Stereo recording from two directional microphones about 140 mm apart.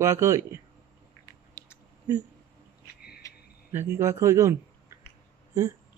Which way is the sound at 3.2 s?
25° left (ahead or behind).